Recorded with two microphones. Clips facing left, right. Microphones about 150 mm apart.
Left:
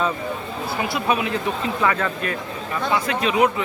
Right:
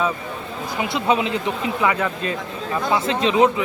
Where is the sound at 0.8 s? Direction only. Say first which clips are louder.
Right 3 dB; 20° right (ahead or behind).